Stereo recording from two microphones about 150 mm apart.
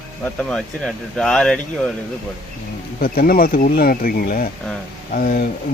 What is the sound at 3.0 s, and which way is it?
Speech, 75° left (ahead or behind).